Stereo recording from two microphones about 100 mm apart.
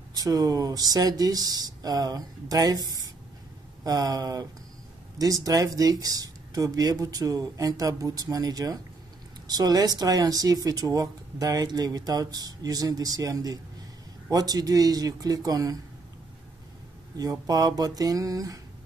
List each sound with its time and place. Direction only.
0.1 s speech: 40° right (ahead or behind)
17.2 s speech: 35° right (ahead or behind)